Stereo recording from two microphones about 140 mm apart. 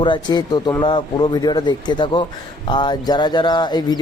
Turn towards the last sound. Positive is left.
turn(degrees=30)  # may be behind; listen again after turning